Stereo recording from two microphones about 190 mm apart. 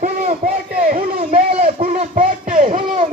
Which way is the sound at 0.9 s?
30° right (ahead or behind).